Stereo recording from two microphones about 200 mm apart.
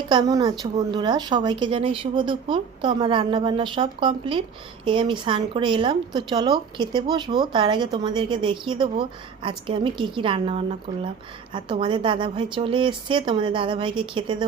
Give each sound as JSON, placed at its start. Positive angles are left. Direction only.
{"t": 0.1, "sound": "speech", "side_deg": -20}